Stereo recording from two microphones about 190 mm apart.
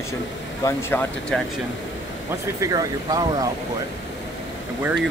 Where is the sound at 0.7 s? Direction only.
10° left (ahead or behind).